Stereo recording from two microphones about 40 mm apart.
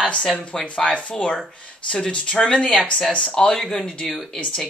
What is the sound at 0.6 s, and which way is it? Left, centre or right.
Speech, left.